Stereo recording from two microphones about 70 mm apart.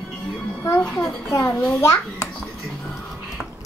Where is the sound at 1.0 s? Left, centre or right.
Left.